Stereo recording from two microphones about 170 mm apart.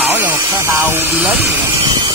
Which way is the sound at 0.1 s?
15° right (ahead or behind).